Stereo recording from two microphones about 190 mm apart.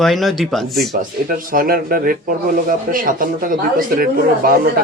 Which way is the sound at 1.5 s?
50° right (ahead or behind).